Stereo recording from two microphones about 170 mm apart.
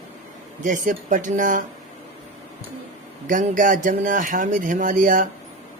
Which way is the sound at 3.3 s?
50° right (ahead or behind).